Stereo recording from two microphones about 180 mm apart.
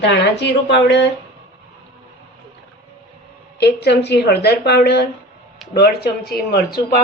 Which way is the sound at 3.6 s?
65° left (ahead or behind).